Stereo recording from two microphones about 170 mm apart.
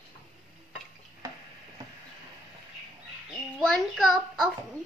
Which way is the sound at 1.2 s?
20° right (ahead or behind).